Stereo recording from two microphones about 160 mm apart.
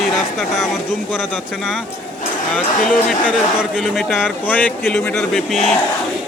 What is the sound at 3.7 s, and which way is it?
Speech, centre (ahead or behind).